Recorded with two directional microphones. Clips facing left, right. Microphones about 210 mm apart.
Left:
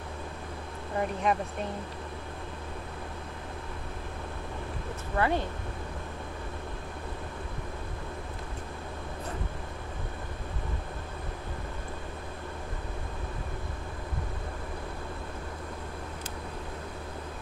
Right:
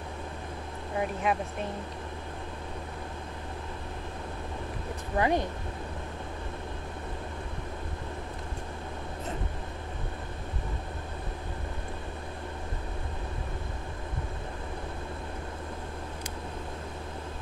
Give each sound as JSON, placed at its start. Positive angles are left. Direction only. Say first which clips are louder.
{"t": 0.9, "sound": "speech", "louder": "left 1 dB", "side_deg": -5}
{"t": 5.1, "sound": "speech", "louder": "right 2 dB", "side_deg": -15}